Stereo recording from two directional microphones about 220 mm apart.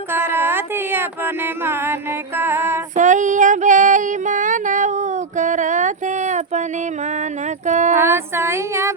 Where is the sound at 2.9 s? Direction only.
35° right (ahead or behind).